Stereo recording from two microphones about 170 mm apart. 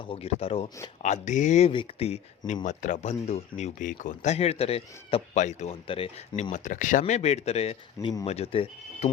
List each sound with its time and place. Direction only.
0.0 s speech: 35° left (ahead or behind)